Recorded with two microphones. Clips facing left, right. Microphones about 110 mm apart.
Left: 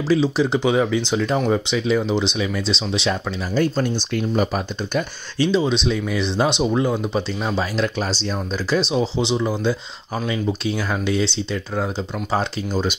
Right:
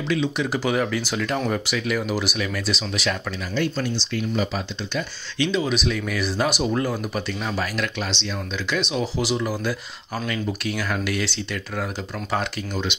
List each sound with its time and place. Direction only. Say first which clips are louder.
0.1 s speech: left 6 dB; 30° left (ahead or behind)
0.6 s speech: left 3 dB; 15° left (ahead or behind)
3.5 s speech: left 5 dB; 45° left (ahead or behind)
5.4 s speech: left 4 dB; 30° left (ahead or behind)